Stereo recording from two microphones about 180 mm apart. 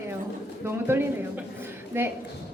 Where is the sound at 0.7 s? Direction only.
15° right (ahead or behind).